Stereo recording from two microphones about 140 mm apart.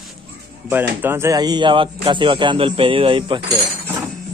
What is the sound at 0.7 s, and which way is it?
Speech, 15° right (ahead or behind).